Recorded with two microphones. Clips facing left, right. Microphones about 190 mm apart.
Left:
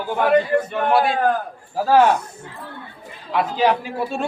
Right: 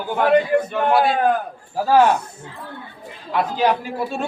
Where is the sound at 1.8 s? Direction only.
Centre (ahead or behind).